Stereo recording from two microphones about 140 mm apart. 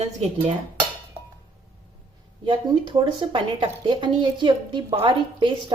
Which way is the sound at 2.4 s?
35° right (ahead or behind).